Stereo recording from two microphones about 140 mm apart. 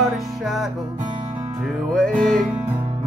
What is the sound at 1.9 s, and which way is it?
Music, 5° left (ahead or behind).